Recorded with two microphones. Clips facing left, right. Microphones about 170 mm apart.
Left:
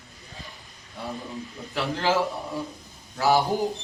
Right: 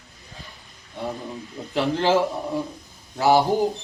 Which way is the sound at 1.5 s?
20° right (ahead or behind).